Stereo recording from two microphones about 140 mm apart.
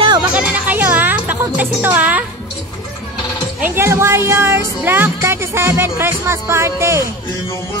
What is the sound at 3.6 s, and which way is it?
Speech, 15° right (ahead or behind).